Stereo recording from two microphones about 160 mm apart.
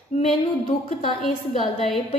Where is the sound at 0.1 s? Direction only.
45° left (ahead or behind).